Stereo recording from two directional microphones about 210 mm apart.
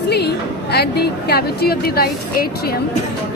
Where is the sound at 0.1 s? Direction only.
50° left (ahead or behind).